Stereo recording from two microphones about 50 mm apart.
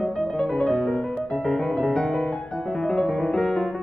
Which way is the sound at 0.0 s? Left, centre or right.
Centre.